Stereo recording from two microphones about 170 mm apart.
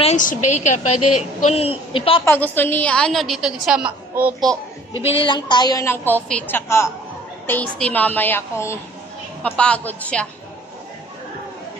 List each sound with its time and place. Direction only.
0.0 s a woman's voice: 45° left (ahead or behind)
1.4 s a woman's voice: 35° left (ahead or behind)
2.2 s a woman's voice: 10° left (ahead or behind)
4.9 s a woman's voice: 30° left (ahead or behind); by 10.2 s 5° left (ahead or behind)